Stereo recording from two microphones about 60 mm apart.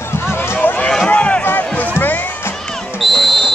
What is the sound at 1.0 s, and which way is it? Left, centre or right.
Run, centre.